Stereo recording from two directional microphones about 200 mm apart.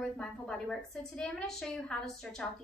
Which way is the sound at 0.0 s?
Centre (ahead or behind).